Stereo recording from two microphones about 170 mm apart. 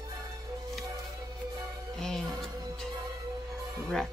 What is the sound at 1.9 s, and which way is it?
Music, centre (ahead or behind).